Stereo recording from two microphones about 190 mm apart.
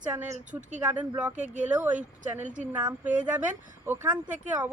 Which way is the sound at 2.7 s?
10° right (ahead or behind).